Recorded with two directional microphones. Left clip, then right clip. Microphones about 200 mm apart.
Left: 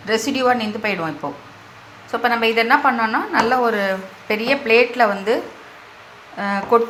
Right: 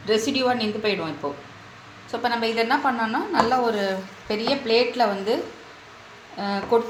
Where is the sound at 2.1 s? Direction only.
10° left (ahead or behind).